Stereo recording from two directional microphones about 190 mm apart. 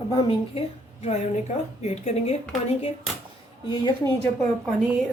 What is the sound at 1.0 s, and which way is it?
A woman's voice, 35° left (ahead or behind).